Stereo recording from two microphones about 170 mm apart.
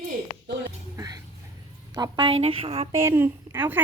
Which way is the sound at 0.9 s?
20° right (ahead or behind).